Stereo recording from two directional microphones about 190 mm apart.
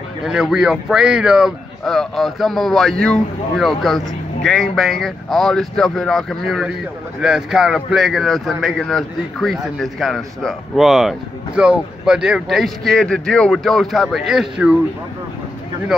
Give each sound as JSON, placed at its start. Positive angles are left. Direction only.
{"t": 0.2, "sound": "a man's voice", "side_deg": 0}